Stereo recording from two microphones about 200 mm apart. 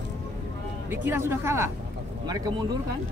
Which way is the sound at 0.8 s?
10° right (ahead or behind).